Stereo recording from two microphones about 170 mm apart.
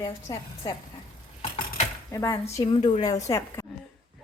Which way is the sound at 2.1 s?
20° left (ahead or behind).